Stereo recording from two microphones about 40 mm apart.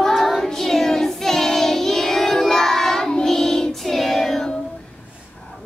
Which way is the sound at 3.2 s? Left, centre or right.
Centre.